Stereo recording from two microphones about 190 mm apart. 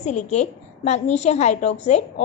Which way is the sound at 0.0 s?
35° left (ahead or behind).